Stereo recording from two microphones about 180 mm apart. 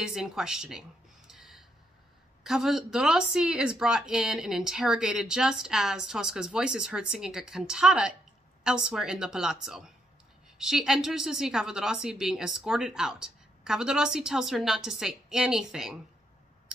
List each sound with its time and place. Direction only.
0.0 s speech: 5° right (ahead or behind)